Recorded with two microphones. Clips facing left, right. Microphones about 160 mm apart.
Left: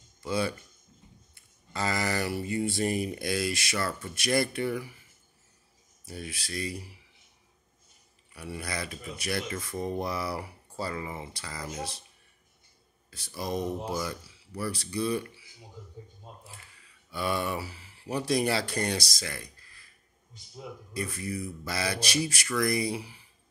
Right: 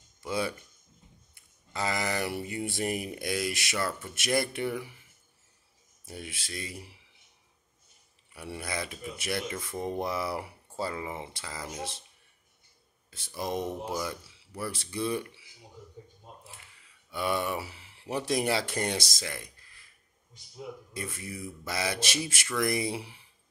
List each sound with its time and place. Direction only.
0.2 s speech: 15° right (ahead or behind)
3.7 s speech: 5° right (ahead or behind)
4.1 s speech: 20° right (ahead or behind)
6.0 s speech: 20° right (ahead or behind)
8.3 s speech: 20° right (ahead or behind)
13.1 s speech: 20° right (ahead or behind)
17.1 s speech: 20° right (ahead or behind)
20.9 s speech: 20° right (ahead or behind)